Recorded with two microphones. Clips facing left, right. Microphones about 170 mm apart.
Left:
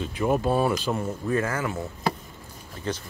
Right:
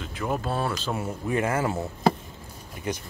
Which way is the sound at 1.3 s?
20° right (ahead or behind).